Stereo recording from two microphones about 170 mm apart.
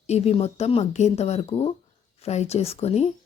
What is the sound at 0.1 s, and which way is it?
A woman's voice, 40° left (ahead or behind).